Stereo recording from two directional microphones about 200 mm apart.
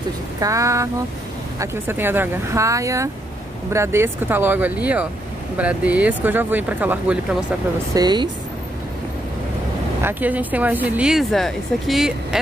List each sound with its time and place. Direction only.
0.4 s speech: 15° right (ahead or behind)
7.9 s speech: 20° right (ahead or behind)
10.0 s speech: 10° right (ahead or behind)